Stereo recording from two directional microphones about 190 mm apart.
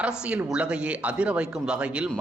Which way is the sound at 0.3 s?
5° right (ahead or behind).